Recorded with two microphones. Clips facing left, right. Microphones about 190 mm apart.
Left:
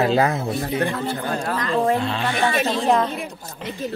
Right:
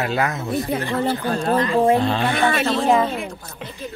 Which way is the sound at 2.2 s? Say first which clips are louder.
Right 2 dB; 55° right (ahead or behind).